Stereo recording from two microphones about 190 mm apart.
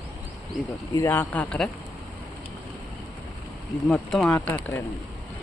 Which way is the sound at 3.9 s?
5° left (ahead or behind).